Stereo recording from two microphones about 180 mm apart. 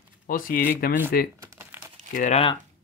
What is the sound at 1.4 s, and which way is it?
Crumpling, 15° right (ahead or behind).